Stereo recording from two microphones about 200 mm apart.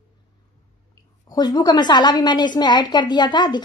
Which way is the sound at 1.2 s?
20° left (ahead or behind).